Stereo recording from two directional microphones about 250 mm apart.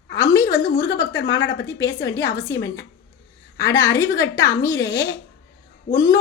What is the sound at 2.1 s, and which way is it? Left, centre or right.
A woman's voice, centre.